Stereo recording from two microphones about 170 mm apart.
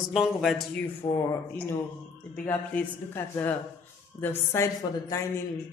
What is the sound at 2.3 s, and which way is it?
A woman's voice, 10° left (ahead or behind).